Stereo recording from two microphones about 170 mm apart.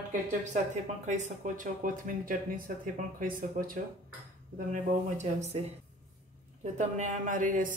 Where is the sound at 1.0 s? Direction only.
45° right (ahead or behind).